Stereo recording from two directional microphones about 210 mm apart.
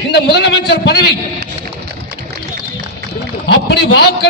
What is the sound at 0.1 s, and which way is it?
Speech, 55° left (ahead or behind).